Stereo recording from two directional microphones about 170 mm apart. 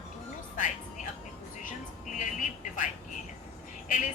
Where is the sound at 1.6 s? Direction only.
45° left (ahead or behind).